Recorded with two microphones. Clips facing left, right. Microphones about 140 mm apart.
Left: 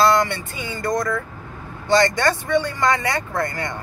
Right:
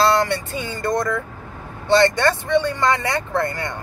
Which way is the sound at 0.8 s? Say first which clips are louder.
Right 1 dB; 25° right (ahead or behind).